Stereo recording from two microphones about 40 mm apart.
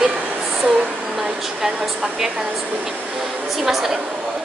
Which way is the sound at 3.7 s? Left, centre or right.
Centre.